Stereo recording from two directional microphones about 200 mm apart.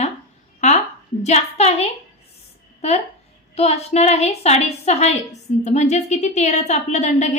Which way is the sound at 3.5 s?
30° left (ahead or behind).